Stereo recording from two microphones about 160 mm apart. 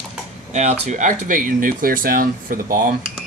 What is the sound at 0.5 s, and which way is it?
Speech, 45° right (ahead or behind).